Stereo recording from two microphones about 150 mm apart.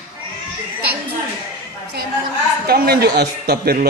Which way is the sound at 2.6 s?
90° right.